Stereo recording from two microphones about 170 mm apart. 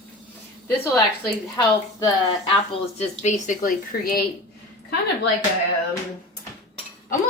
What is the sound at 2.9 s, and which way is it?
Speech, 45° left (ahead or behind).